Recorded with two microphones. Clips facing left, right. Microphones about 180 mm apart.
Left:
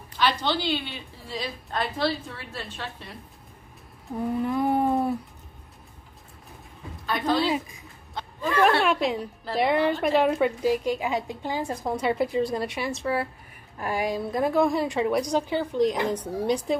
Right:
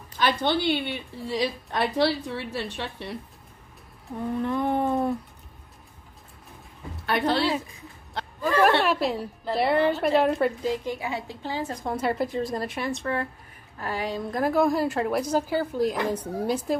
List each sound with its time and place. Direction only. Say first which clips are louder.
0.2 s a woman's voice: right 1 dB; 50° right (ahead or behind); by 3.2 s 70° right (ahead or behind)
4.4 s a woman's voice: left 1 dB; 5° left (ahead or behind)
8.4 s a woman's voice: right 1 dB; centre (ahead or behind)
10.7 s a woman's voice: left 4 dB; 15° left (ahead or behind)
11.8 s a woman's voice: left 1 dB; centre (ahead or behind)
14.3 s a woman's voice: right 1 dB; centre (ahead or behind)